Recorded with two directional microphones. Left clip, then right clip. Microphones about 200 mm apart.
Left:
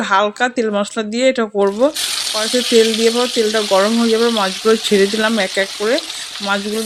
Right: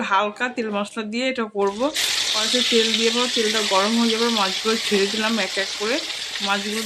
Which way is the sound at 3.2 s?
25° left (ahead or behind).